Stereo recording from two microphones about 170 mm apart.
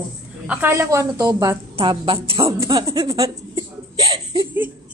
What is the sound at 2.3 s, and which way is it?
Female singing, 20° right (ahead or behind).